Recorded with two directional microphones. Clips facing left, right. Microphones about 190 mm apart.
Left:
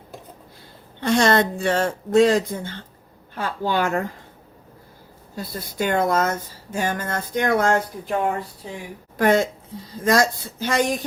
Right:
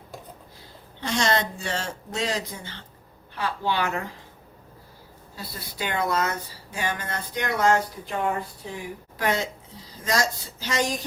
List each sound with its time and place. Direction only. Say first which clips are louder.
1.0 s speech: left 7 dB; 55° left (ahead or behind)
5.4 s speech: left 8 dB; 50° left (ahead or behind)
9.1 s speech: left 8 dB; 50° left (ahead or behind)